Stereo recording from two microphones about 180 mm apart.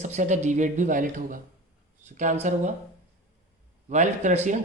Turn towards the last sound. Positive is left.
turn(degrees=-40)  # may be behind; listen again after turning